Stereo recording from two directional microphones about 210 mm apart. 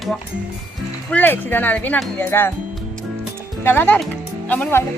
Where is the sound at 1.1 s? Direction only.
10° left (ahead or behind).